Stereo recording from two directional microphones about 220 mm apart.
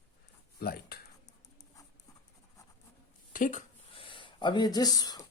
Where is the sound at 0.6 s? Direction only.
45° left (ahead or behind).